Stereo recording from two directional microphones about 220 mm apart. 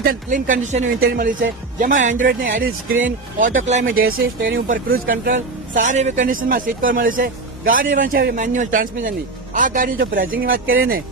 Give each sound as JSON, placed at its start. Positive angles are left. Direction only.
{"t": 0.0, "sound": "speech", "side_deg": -40}